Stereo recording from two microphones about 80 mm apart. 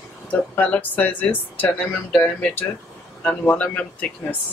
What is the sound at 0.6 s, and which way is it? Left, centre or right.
Speech, centre.